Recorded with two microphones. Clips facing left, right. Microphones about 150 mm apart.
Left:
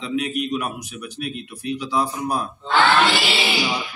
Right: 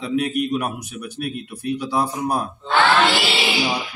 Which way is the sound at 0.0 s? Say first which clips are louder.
Right 3 dB; 50° right (ahead or behind).